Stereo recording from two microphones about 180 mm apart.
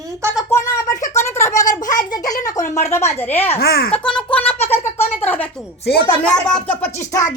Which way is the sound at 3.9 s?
5° left (ahead or behind).